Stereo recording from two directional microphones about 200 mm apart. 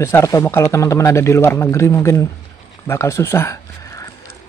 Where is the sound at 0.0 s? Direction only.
15° left (ahead or behind).